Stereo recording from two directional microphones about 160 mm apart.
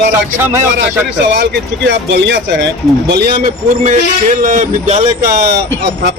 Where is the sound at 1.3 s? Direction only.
90° right; by 5.0 s 45° right (ahead or behind).